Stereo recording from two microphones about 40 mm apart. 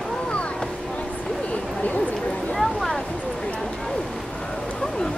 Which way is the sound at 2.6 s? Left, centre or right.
Centre.